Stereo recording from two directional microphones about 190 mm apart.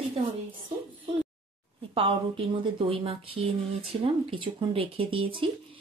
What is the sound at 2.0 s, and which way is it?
Speech, 25° right (ahead or behind).